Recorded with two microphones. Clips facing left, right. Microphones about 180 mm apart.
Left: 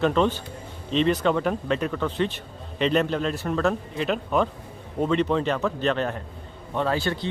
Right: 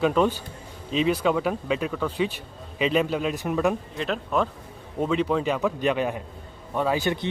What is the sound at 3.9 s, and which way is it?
Speech, centre (ahead or behind).